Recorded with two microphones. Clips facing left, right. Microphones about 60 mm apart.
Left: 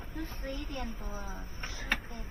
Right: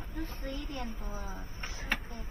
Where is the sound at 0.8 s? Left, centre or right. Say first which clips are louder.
Even; centre.